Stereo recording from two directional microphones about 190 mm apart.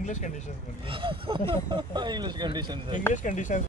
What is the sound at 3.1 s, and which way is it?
Speech, 40° left (ahead or behind).